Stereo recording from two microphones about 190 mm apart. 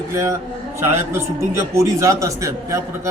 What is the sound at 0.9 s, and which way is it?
A man's voice, 15° right (ahead or behind).